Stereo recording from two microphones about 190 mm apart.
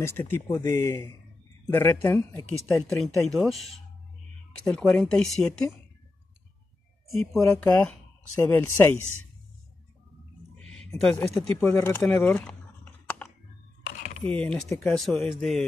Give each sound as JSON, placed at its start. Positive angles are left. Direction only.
{"t": 0.0, "sound": "speech", "side_deg": 10}
{"t": 7.3, "sound": "speech", "side_deg": 10}
{"t": 10.9, "sound": "speech", "side_deg": 15}
{"t": 13.9, "sound": "cutlery", "side_deg": 40}
{"t": 14.2, "sound": "speech", "side_deg": 5}
{"t": 15.0, "sound": "speech", "side_deg": 0}